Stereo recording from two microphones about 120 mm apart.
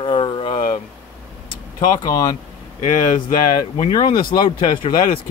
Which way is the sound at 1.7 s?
35° left (ahead or behind).